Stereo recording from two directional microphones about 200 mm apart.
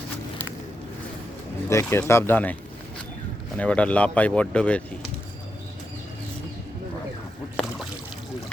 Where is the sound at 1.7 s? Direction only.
15° left (ahead or behind).